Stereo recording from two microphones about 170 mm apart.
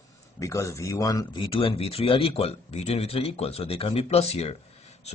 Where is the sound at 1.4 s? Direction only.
35° left (ahead or behind).